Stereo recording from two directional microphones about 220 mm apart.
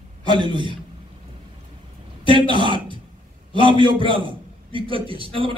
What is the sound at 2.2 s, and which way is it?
Throat clearing, 20° right (ahead or behind).